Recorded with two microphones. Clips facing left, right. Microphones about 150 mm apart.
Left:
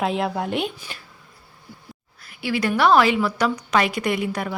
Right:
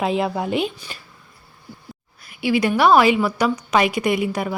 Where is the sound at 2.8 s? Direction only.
10° right (ahead or behind).